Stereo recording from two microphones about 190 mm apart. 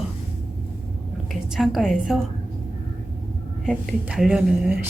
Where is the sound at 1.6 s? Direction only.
Centre (ahead or behind).